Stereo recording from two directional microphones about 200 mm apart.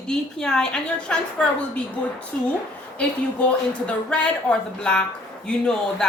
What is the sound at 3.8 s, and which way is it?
A woman's voice, 5° left (ahead or behind).